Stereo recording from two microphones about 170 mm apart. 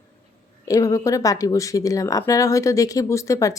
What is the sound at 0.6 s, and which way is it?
Speech, 20° left (ahead or behind).